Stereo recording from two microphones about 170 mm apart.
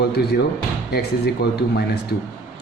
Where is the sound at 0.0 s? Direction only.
70° left (ahead or behind).